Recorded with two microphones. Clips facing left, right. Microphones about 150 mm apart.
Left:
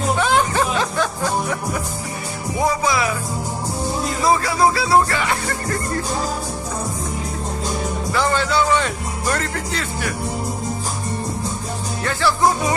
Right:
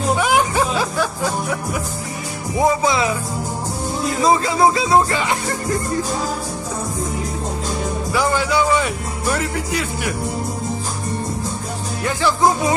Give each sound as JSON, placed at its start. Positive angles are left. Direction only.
{"t": 0.2, "sound": "music", "side_deg": -10}
{"t": 2.6, "sound": "music", "side_deg": -25}
{"t": 4.2, "sound": "music", "side_deg": -20}
{"t": 8.1, "sound": "music", "side_deg": -10}
{"t": 12.0, "sound": "speech", "side_deg": -15}